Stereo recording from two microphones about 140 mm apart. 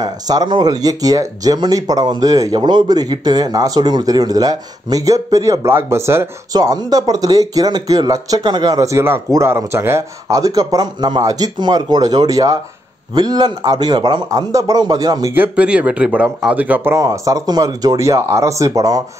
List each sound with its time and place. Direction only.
0.0 s speech: 30° right (ahead or behind)
15.3 s speech: 10° right (ahead or behind); by 19.0 s 25° right (ahead or behind)